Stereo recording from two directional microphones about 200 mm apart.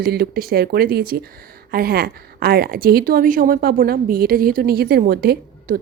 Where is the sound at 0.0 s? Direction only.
50° right (ahead or behind).